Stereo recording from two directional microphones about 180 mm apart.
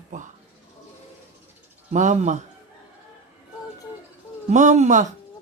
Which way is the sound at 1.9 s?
40° right (ahead or behind).